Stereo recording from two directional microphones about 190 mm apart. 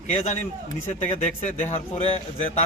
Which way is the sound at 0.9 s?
40° left (ahead or behind).